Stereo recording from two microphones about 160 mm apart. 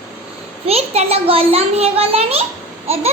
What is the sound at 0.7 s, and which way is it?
A child's voice, 40° right (ahead or behind).